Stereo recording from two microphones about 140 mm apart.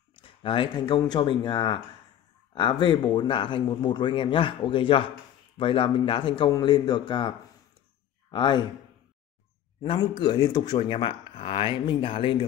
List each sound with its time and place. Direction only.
0.1 s speech: 40° left (ahead or behind)
9.8 s speech: 35° left (ahead or behind)